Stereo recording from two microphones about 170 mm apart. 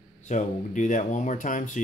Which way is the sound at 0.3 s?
45° left (ahead or behind).